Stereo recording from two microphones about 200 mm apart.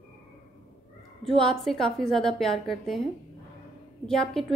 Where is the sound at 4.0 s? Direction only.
5° left (ahead or behind).